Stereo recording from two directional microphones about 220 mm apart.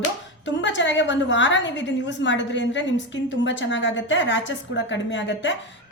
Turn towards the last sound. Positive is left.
turn(degrees=55)  # may be behind; listen again after turning